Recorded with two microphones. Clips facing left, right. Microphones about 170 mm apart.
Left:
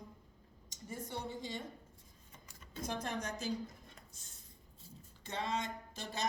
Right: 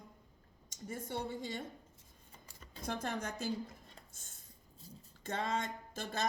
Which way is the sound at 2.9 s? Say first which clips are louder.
Right 1 dB; 60° right (ahead or behind).